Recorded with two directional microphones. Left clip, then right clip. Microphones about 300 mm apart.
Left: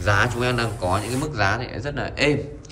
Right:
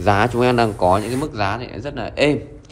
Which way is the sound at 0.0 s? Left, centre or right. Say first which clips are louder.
Right 5 dB; centre.